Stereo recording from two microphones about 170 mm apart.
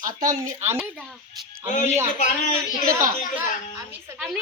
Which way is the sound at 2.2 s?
45° left (ahead or behind).